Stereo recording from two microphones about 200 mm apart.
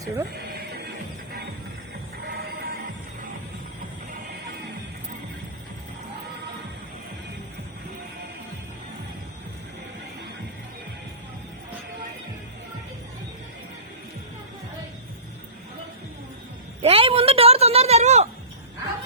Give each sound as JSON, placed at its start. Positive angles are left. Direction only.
{"t": 0.0, "sound": "speech", "side_deg": -15}
{"t": 0.3, "sound": "music", "side_deg": -55}
{"t": 2.2, "sound": "music", "side_deg": -50}
{"t": 16.8, "sound": "a sound", "side_deg": -30}